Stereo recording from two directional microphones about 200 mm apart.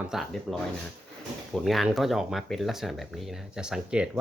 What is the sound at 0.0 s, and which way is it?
Speech, centre (ahead or behind).